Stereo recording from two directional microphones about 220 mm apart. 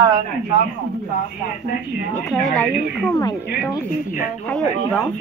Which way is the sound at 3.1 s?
15° left (ahead or behind).